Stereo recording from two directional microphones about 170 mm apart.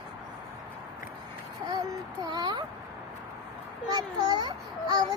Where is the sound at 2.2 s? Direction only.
25° right (ahead or behind).